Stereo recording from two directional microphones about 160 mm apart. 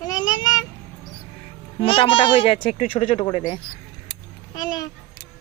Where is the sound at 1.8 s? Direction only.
35° left (ahead or behind).